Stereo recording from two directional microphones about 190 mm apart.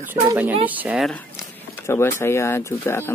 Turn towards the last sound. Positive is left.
turn(degrees=10)  # may be behind; listen again after turning